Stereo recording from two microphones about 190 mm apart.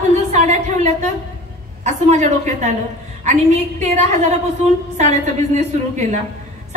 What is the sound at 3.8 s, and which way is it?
A woman's voice, 35° right (ahead or behind).